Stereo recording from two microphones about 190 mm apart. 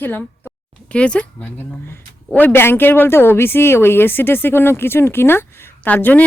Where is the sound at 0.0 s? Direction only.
10° left (ahead or behind).